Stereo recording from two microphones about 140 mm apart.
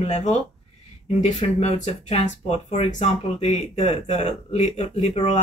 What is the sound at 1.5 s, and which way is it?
Speech, 50° left (ahead or behind).